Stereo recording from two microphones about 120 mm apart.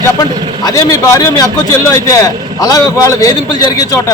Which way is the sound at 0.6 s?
30° left (ahead or behind).